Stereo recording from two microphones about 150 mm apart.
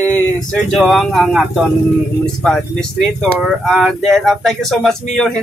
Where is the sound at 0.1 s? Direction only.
10° left (ahead or behind).